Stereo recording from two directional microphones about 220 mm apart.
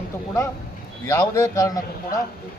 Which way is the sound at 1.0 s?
15° left (ahead or behind).